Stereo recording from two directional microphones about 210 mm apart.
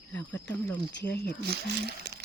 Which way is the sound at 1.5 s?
50° right (ahead or behind).